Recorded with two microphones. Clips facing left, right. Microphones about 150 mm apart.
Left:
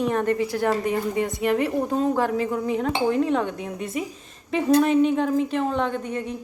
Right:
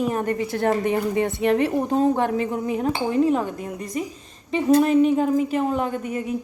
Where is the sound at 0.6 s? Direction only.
25° right (ahead or behind).